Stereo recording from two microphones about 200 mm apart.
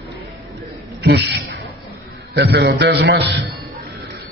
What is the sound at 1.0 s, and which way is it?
A man's voice, 60° right (ahead or behind).